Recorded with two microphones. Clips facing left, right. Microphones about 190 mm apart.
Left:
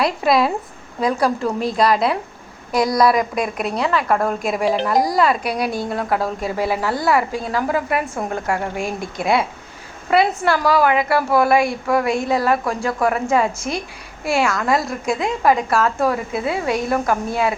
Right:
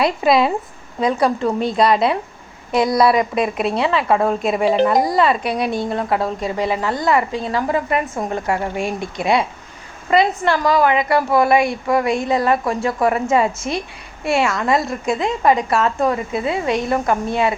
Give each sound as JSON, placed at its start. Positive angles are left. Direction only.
{"t": 0.0, "sound": "a woman's voice", "side_deg": 0}
{"t": 3.6, "sound": "a woman's voice", "side_deg": -25}
{"t": 4.1, "sound": "a woman's voice", "side_deg": -5}